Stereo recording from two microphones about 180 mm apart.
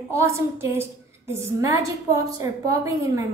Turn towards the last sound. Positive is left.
turn(degrees=-15)  # may be behind; listen again after turning